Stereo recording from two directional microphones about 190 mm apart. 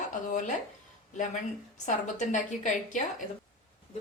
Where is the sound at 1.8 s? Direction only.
40° left (ahead or behind).